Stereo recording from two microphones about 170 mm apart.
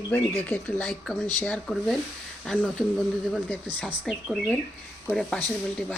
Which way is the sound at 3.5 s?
10° left (ahead or behind).